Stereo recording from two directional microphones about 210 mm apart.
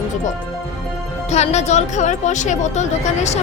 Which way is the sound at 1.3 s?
30° left (ahead or behind).